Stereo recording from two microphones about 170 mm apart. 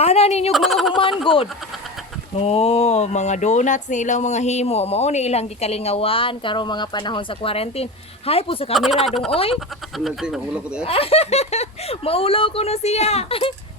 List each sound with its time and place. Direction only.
0.0 s speech: 40° left (ahead or behind)
0.5 s speech: centre (ahead or behind)
1.2 s speech: 30° left (ahead or behind)
8.7 s speech: centre (ahead or behind)
9.3 s speech: 35° left (ahead or behind)
10.0 s speech: 5° right (ahead or behind)
10.8 s speech: 35° left (ahead or behind)